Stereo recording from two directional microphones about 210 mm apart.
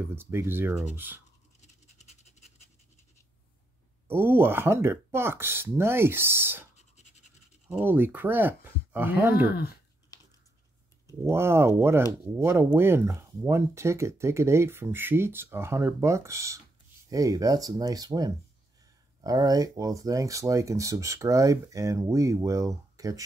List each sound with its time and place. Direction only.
0.1 s speech: 10° right (ahead or behind)
1.6 s scratch: 35° left (ahead or behind)
4.1 s speech: 10° right (ahead or behind)
11.1 s speech: 10° right (ahead or behind)